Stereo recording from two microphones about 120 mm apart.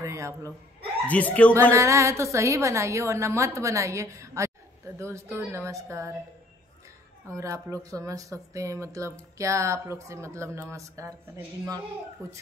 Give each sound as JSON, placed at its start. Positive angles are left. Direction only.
{"t": 0.0, "sound": "chuckle", "side_deg": -25}
{"t": 1.0, "sound": "speech", "side_deg": 15}
{"t": 1.5, "sound": "a woman's voice", "side_deg": -20}
{"t": 7.2, "sound": "a woman's voice", "side_deg": -25}